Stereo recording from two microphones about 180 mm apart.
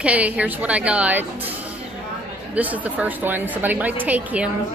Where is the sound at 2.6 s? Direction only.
10° right (ahead or behind).